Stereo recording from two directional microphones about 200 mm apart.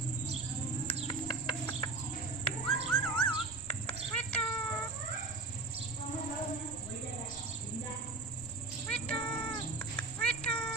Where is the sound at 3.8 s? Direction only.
5° left (ahead or behind).